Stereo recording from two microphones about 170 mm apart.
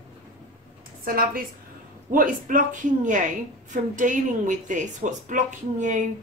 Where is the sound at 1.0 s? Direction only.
60° right (ahead or behind).